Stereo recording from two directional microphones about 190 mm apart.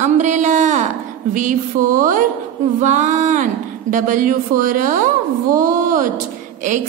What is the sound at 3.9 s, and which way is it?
Speech, 45° right (ahead or behind).